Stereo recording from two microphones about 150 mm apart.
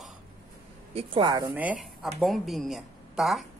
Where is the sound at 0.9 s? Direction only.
35° right (ahead or behind).